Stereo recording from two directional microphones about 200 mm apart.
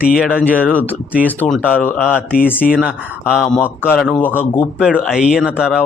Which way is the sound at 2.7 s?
5° right (ahead or behind).